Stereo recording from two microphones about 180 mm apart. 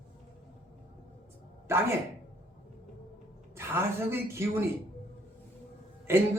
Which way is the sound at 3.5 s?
15° right (ahead or behind).